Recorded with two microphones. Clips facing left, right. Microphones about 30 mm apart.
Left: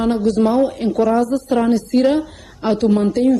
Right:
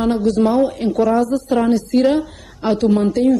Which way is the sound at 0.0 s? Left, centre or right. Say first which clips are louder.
Even; left.